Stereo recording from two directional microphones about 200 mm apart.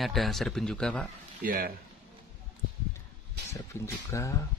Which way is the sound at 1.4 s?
45° right (ahead or behind).